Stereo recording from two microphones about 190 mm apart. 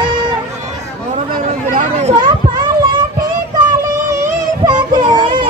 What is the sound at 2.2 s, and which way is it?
Children playing, 20° right (ahead or behind).